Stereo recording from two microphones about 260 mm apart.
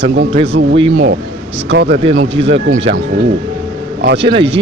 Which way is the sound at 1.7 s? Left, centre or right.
Right.